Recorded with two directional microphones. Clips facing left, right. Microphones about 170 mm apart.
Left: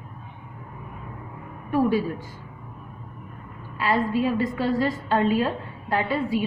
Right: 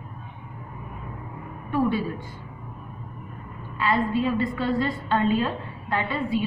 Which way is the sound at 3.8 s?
40° left (ahead or behind).